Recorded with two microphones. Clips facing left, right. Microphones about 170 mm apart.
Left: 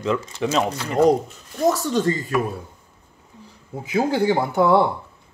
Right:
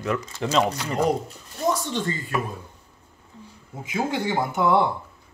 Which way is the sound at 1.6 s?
40° left (ahead or behind).